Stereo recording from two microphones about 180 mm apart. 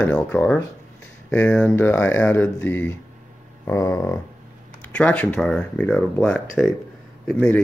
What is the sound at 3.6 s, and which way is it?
Speech, 20° left (ahead or behind).